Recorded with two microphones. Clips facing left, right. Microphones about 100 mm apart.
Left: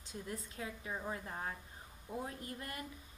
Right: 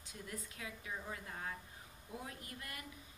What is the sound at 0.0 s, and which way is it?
A woman's voice, 30° left (ahead or behind).